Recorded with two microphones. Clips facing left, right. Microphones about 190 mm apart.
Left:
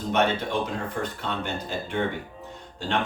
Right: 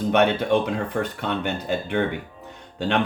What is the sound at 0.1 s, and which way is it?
Speech, 65° right (ahead or behind).